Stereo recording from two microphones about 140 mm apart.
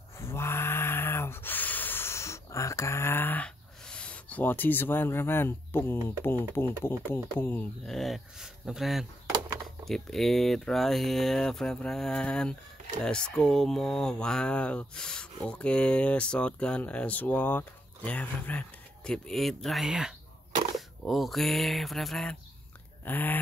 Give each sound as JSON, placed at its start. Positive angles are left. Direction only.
{"t": 0.2, "sound": "a sound", "side_deg": 20}
{"t": 6.0, "sound": "speech", "side_deg": 15}
{"t": 7.8, "sound": "speech", "side_deg": 0}